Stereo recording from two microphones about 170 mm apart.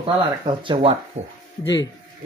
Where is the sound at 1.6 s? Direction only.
90° left.